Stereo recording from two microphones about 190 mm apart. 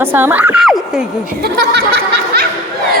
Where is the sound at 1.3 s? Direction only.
55° right (ahead or behind).